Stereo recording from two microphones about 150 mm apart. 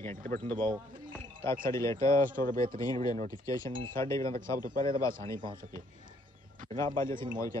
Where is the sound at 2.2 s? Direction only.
65° right (ahead or behind).